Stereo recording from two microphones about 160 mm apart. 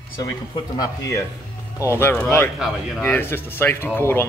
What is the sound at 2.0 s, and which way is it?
Speech, 15° left (ahead or behind).